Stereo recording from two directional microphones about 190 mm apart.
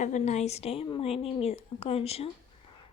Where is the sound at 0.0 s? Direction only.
40° left (ahead or behind).